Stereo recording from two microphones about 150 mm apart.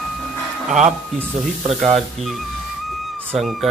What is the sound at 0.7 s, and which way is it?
Speech, 55° right (ahead or behind).